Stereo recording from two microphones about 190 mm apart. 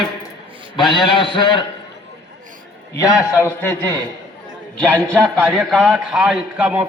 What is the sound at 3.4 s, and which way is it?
A man's voice, 10° left (ahead or behind).